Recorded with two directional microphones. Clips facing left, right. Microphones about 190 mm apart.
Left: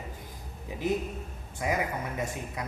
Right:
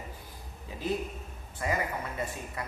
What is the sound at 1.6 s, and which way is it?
Speech, 15° left (ahead or behind).